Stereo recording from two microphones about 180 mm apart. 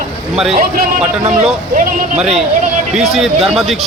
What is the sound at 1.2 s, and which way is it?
Speech, 35° right (ahead or behind).